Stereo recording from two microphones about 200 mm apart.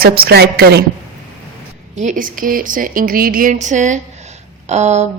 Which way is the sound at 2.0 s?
40° right (ahead or behind).